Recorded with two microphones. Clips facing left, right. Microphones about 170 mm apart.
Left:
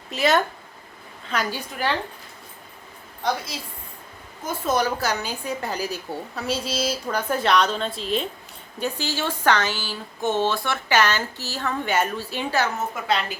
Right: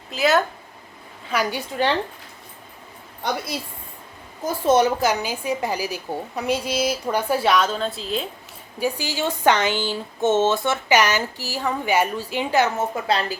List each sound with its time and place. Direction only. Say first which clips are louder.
0.1 s speech: right 1 dB; centre (ahead or behind)
1.5 s a woman's voice: right 4 dB; 20° right (ahead or behind)
4.4 s a woman's voice: right 5 dB; 25° right (ahead or behind); by 8.3 s centre (ahead or behind)
8.8 s a woman's voice: right 3 dB; 10° right (ahead or behind)
12.9 s a woman's voice: right 2 dB; 35° right (ahead or behind)